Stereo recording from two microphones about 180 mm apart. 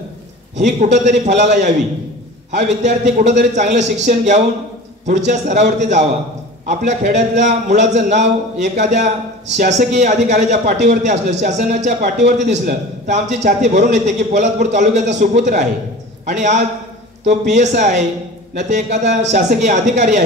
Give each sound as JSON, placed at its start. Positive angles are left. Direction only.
{"t": 0.6, "sound": "a man's voice", "side_deg": -40}